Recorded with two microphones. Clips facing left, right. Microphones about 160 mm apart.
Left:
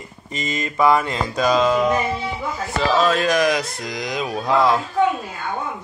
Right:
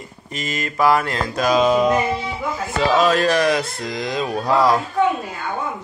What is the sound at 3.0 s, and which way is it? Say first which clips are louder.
Music: right 1 dB; centre (ahead or behind).